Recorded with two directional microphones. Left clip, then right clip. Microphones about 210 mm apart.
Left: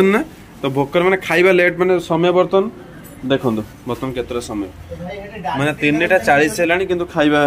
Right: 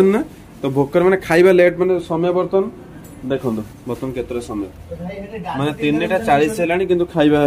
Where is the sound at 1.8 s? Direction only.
5° left (ahead or behind).